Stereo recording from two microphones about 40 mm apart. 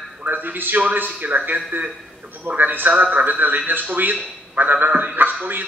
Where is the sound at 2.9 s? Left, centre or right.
Right.